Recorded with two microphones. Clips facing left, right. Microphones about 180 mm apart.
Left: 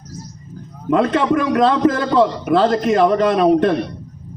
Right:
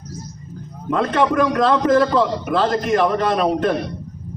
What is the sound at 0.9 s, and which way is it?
A man's voice, 25° left (ahead or behind).